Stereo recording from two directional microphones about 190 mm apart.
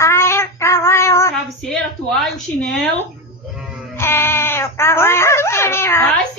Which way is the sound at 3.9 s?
15° left (ahead or behind).